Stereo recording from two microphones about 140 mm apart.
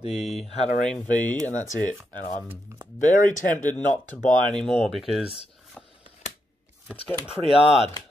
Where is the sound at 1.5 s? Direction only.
60° left (ahead or behind).